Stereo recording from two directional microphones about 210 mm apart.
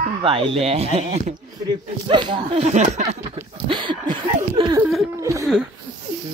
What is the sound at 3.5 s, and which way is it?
Speech, 25° right (ahead or behind).